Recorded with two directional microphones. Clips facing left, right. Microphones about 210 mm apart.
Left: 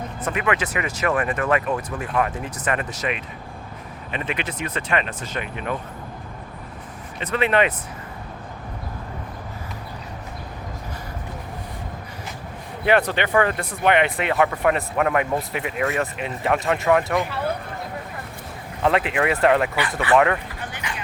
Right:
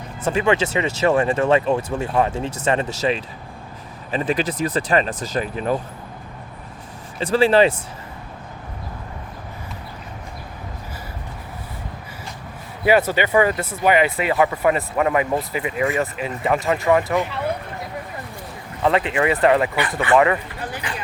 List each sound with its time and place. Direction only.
0.2 s speech: 25° right (ahead or behind)
7.2 s speech: 30° right (ahead or behind)
12.8 s speech: 5° right (ahead or behind)
18.8 s speech: centre (ahead or behind)
20.7 s vehicle: 35° right (ahead or behind)